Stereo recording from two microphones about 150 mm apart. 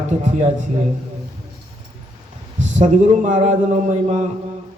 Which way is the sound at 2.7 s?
55° right (ahead or behind).